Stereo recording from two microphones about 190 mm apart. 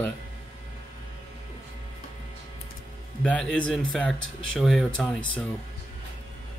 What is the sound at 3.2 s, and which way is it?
Speech, 5° left (ahead or behind).